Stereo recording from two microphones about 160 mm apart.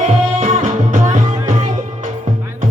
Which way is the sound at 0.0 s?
45° right (ahead or behind).